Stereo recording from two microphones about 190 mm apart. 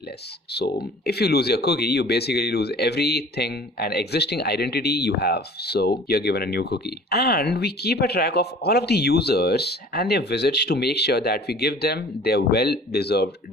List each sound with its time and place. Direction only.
0.5 s speech: 60° left (ahead or behind)